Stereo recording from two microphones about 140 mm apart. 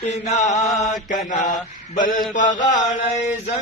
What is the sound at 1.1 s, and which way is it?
Mantra, 65° left (ahead or behind).